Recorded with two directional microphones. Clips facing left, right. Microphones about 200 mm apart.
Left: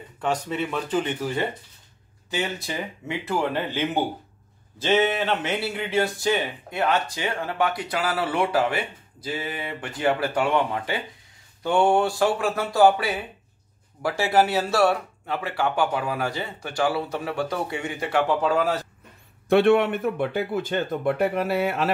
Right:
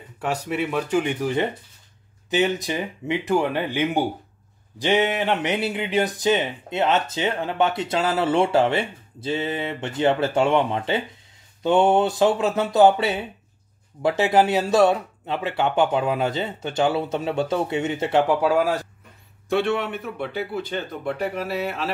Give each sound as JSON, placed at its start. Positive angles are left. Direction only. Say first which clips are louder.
{"t": 0.2, "sound": "speech", "louder": "right 1 dB", "side_deg": -10}
{"t": 18.4, "sound": "speech", "louder": "right 2 dB", "side_deg": -10}
{"t": 19.5, "sound": "speech", "louder": "left 5 dB", "side_deg": 55}